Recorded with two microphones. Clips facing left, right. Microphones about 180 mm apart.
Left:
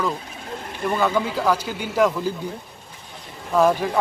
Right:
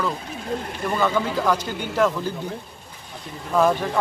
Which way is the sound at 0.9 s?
10° left (ahead or behind).